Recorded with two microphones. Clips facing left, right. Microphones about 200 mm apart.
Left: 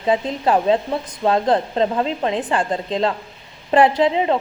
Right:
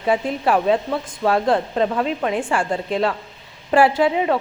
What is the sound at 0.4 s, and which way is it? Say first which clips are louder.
A woman's voice: left 1 dB; 25° left (ahead or behind).